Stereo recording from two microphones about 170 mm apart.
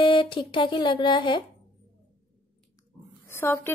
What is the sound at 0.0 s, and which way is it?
Speech, 30° left (ahead or behind).